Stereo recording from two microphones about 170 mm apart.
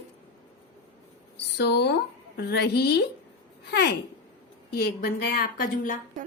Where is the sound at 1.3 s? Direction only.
85° left.